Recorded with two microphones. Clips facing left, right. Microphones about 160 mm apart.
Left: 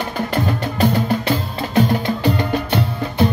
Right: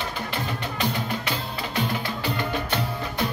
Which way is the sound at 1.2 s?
40° left (ahead or behind).